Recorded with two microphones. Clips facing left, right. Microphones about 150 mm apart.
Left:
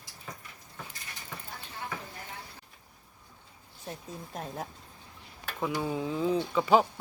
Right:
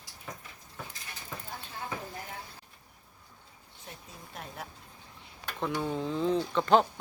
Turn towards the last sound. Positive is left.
turn(degrees=5)  # may be behind; listen again after turning